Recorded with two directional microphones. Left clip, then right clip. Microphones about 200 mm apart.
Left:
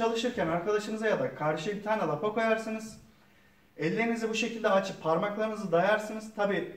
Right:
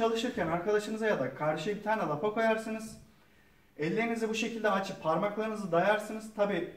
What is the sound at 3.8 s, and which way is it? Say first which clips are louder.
Speech: left 2 dB; 5° left (ahead or behind).